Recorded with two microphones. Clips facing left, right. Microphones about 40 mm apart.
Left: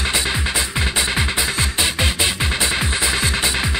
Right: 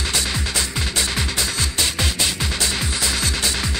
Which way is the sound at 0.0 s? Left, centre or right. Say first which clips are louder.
Left 3 dB; left.